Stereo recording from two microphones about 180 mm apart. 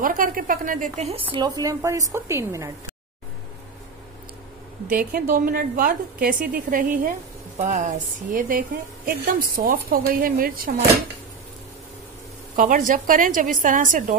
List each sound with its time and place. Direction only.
0.0 s a woman's voice: 50° right (ahead or behind)
1.3 s a woman's voice: 20° right (ahead or behind)
4.8 s a woman's voice: 50° right (ahead or behind)
12.5 s a woman's voice: 50° right (ahead or behind)